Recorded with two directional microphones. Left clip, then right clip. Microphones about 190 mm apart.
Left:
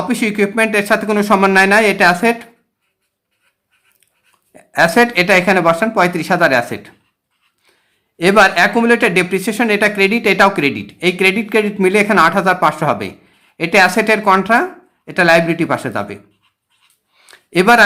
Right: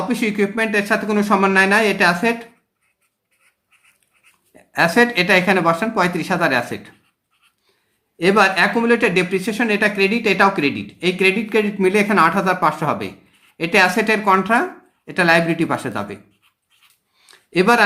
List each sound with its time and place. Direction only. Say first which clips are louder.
0.1 s speech: left 5 dB; 30° left (ahead or behind)
4.5 s speech: left 4 dB; 30° left (ahead or behind)
8.2 s speech: left 4 dB; 35° left (ahead or behind)
17.2 s a sound: left 3 dB; 30° left (ahead or behind)